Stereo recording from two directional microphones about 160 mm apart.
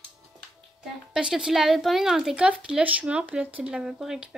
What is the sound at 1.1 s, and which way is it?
Speech, 5° right (ahead or behind).